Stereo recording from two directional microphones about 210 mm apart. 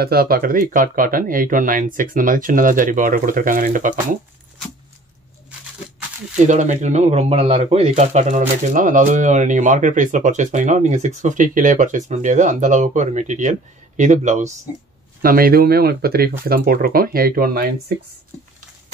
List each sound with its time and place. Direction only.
0.0 s speech: 45° right (ahead or behind)
6.3 s speech: 35° right (ahead or behind)
15.2 s speech: 45° right (ahead or behind)